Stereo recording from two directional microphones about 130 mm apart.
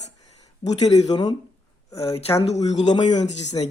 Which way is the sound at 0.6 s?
55° left (ahead or behind).